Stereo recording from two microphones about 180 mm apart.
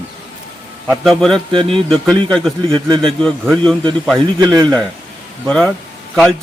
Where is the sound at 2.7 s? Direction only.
25° right (ahead or behind).